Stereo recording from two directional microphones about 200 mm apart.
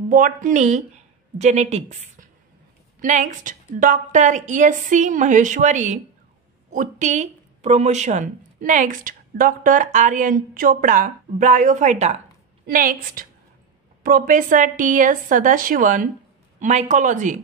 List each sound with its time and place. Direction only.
0.1 s a woman's voice: 40° right (ahead or behind)